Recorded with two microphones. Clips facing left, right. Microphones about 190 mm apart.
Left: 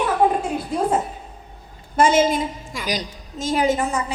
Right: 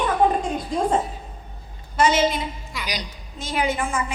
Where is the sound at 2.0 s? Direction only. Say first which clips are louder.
Left 3 dB; 50° left (ahead or behind).